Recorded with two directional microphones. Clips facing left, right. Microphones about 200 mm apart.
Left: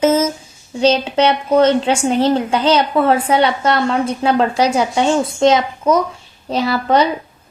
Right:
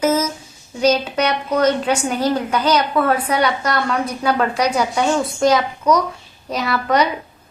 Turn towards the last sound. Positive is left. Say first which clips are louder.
# left 3 dB
turn(degrees=30)  # may be behind; listen again after turning